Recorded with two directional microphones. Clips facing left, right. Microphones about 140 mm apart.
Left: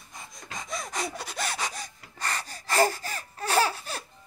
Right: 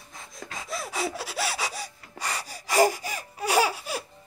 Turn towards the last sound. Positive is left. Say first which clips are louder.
# right 2 dB
turn(degrees=-10)  # may be behind; listen again after turning